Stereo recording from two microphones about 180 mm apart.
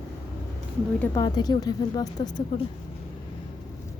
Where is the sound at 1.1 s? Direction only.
20° left (ahead or behind).